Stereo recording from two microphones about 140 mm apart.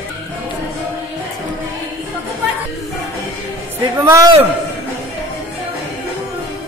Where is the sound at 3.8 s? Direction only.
20° right (ahead or behind).